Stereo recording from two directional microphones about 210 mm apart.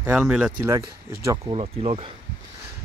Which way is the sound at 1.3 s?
25° right (ahead or behind).